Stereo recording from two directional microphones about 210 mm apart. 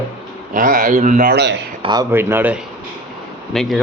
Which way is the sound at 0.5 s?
40° right (ahead or behind).